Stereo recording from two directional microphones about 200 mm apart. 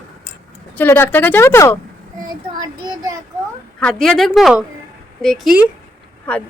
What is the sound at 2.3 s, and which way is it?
Child singing, 20° right (ahead or behind).